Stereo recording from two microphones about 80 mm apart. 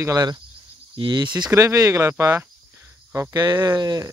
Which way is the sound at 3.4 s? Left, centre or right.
Right.